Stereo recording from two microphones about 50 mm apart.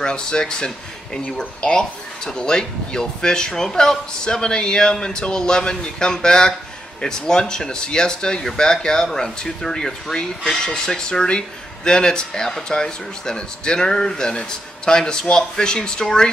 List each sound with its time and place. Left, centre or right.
0.0 s speech: centre